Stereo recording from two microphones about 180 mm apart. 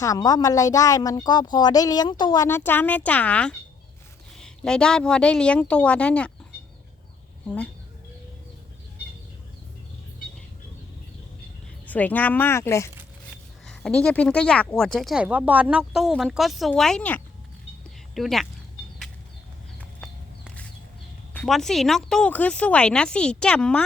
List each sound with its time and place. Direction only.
0.0 s speech: 20° left (ahead or behind)
7.4 s speech: 5° left (ahead or behind)
11.9 s speech: 10° left (ahead or behind)
13.7 s speech: 5° left (ahead or behind)
21.3 s speech: centre (ahead or behind)